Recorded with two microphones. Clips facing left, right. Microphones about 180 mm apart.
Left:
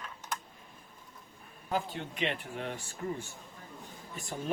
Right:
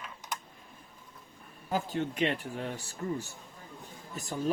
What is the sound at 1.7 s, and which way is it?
Speech, 40° right (ahead or behind).